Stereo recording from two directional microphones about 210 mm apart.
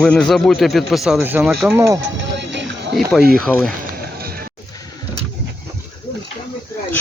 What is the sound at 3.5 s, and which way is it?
Speech, 10° left (ahead or behind).